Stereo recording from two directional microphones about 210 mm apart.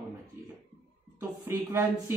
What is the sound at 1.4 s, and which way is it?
Speech, 15° right (ahead or behind).